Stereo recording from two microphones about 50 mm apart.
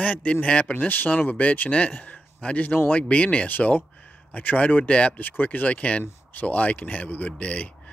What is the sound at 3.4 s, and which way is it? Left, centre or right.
A man's voice, left.